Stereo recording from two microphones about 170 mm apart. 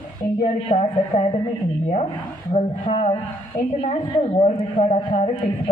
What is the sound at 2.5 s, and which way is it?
A woman's voice, 40° left (ahead or behind).